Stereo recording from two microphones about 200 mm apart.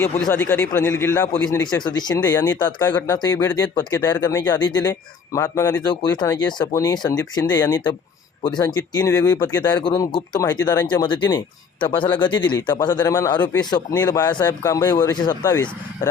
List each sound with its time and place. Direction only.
0.0 s speech: 10° left (ahead or behind)